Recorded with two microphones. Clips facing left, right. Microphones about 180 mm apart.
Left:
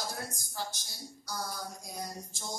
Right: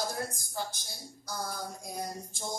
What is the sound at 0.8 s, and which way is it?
Music, 50° right (ahead or behind).